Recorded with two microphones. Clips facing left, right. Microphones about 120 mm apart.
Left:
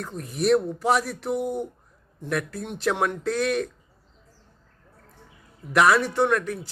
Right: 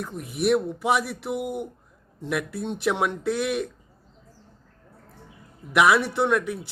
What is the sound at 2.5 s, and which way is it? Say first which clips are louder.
Speech: right 4 dB; 25° right (ahead or behind).